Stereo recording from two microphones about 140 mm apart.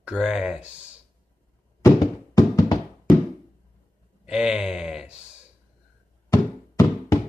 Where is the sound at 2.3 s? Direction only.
25° left (ahead or behind).